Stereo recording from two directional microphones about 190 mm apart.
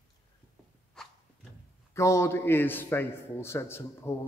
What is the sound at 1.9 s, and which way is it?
A man's voice, 15° left (ahead or behind).